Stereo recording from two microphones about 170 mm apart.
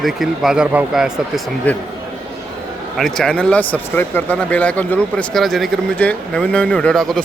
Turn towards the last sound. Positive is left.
turn(degrees=0)  # may be behind; listen again after turning